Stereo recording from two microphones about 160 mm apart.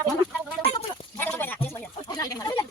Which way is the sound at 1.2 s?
10° left (ahead or behind).